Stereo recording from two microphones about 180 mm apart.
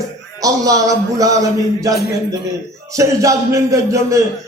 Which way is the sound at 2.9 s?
15° right (ahead or behind).